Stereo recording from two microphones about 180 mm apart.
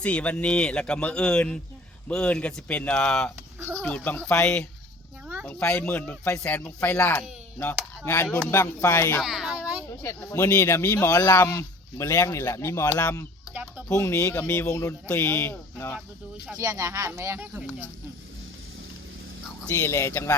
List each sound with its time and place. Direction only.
0.0 s speech: 5° left (ahead or behind)
9.2 s a sound: 5° right (ahead or behind)
10.0 s speech: 15° left (ahead or behind)
13.5 s a sound: 10° right (ahead or behind)
13.8 s speech: 15° left (ahead or behind)
16.6 s speech: 20° right (ahead or behind)
19.6 s speech: 15° left (ahead or behind)